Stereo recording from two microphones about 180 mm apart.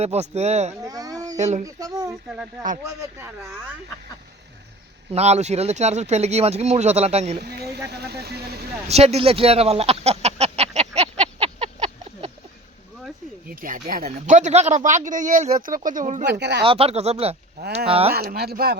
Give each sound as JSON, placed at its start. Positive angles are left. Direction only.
{"t": 0.0, "sound": "speech", "side_deg": -35}
{"t": 0.7, "sound": "a sound", "side_deg": -20}
{"t": 1.4, "sound": "speech", "side_deg": -40}
{"t": 1.6, "sound": "speech", "side_deg": -20}
{"t": 5.1, "sound": "speech", "side_deg": -35}
{"t": 7.3, "sound": "speech", "side_deg": -65}
{"t": 8.9, "sound": "a sound", "side_deg": -35}
{"t": 13.5, "sound": "speech", "side_deg": -50}
{"t": 16.2, "sound": "speech", "side_deg": -70}
{"t": 16.6, "sound": "speech", "side_deg": -30}
{"t": 18.1, "sound": "speech", "side_deg": -60}